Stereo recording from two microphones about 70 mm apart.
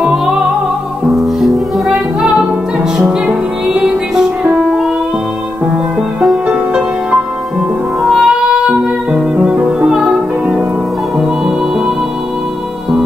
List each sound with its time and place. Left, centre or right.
0.0 s music: centre
4.4 s music: centre
6.4 s music: centre
8.0 s music: centre